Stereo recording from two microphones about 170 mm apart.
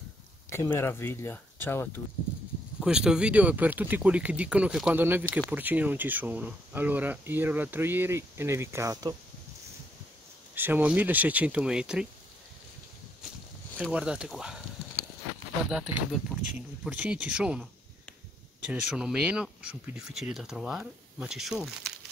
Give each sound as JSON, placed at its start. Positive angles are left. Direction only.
{"t": 0.5, "sound": "speech", "side_deg": 15}
{"t": 2.8, "sound": "speech", "side_deg": -5}
{"t": 10.5, "sound": "speech", "side_deg": -10}
{"t": 13.9, "sound": "speech", "side_deg": -5}
{"t": 15.7, "sound": "speech", "side_deg": -5}
{"t": 18.7, "sound": "speech", "side_deg": -5}